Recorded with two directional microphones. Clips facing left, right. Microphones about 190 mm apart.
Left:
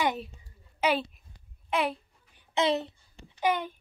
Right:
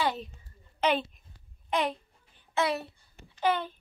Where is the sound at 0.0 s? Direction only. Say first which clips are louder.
Left 1 dB; 15° left (ahead or behind).